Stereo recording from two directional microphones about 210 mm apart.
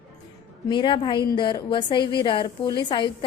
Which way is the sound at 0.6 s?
20° left (ahead or behind).